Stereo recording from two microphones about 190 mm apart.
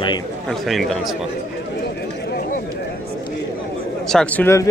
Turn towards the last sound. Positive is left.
turn(degrees=10)  # may be behind; listen again after turning